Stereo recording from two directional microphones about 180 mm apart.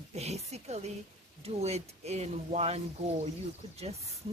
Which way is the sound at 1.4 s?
35° right (ahead or behind).